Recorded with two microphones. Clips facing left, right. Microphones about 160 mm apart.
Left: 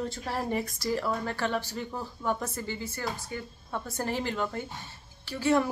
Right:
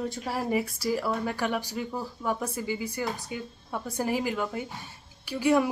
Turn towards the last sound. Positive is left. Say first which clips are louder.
# right 2 dB
turn(degrees=-10)  # may be behind; listen again after turning